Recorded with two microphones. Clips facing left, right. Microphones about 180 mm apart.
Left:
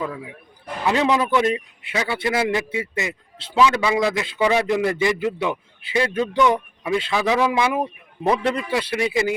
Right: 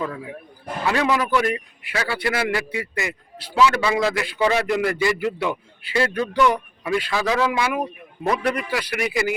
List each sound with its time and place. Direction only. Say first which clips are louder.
0.0 s a man's voice: even; 10° left (ahead or behind)
0.9 s a man's voice: left 2 dB; 20° left (ahead or behind)